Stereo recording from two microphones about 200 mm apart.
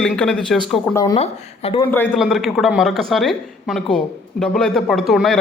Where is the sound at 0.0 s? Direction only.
5° left (ahead or behind).